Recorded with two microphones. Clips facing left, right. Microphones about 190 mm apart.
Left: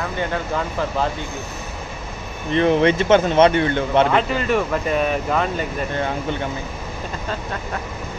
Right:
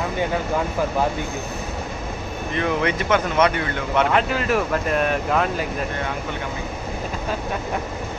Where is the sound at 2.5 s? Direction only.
30° left (ahead or behind).